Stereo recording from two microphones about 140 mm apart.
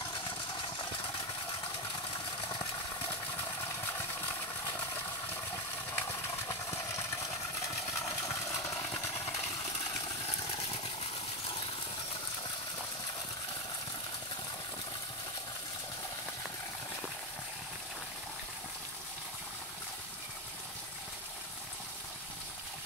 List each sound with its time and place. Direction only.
5.9 s horse: 20° left (ahead or behind)
8.3 s a sound: 20° left (ahead or behind)
10.4 s vehicle: 35° left (ahead or behind)